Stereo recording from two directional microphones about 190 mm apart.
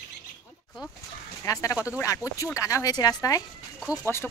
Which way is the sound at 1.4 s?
15° left (ahead or behind).